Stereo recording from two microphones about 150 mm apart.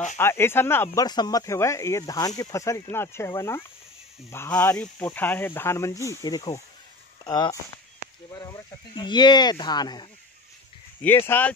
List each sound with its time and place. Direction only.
0.2 s speech: 15° left (ahead or behind)
1.0 s speech: 25° left (ahead or behind)
11.1 s speech: 15° left (ahead or behind)